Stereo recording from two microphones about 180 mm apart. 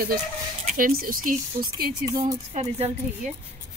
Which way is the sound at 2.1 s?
40° right (ahead or behind).